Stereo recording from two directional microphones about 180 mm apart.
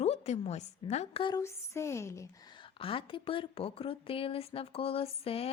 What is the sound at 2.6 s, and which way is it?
Speech, 30° left (ahead or behind).